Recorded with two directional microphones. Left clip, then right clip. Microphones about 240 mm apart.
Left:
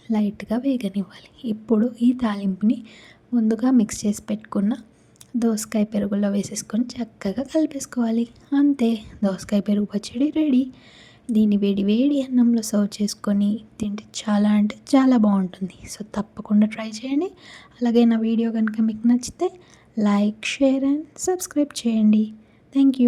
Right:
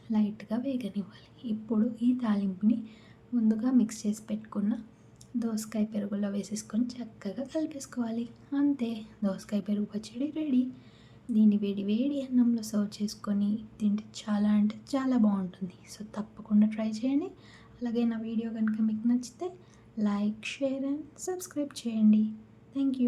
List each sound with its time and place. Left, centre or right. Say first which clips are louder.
0.1 s a woman's voice: left 8 dB; left